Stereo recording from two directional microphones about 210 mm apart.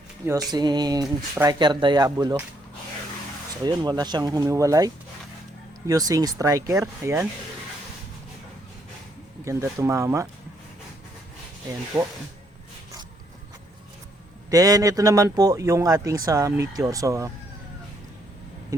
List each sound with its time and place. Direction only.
0.3 s speech: 20° right (ahead or behind)
3.6 s speech: 20° right (ahead or behind)
5.9 s speech: 15° right (ahead or behind)
9.4 s speech: 15° right (ahead or behind)
11.9 s speech: 15° right (ahead or behind)
14.5 s speech: 15° right (ahead or behind)